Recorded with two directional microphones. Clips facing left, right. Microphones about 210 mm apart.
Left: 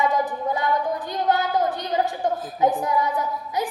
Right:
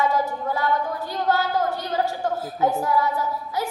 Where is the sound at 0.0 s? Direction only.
15° left (ahead or behind).